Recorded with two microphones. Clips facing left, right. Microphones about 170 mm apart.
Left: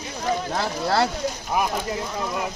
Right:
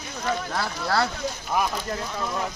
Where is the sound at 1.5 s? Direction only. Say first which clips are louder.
Left 1 dB; 10° left (ahead or behind).